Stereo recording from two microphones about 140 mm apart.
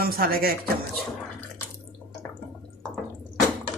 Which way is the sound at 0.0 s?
90° right.